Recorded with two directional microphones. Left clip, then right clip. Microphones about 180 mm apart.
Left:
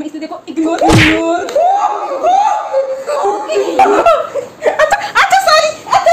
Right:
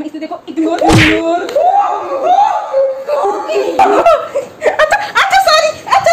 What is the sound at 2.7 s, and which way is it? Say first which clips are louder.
Music: right 3 dB; 30° left (ahead or behind).